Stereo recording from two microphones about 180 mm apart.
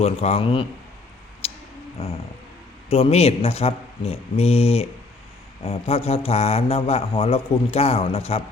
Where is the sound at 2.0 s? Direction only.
35° left (ahead or behind).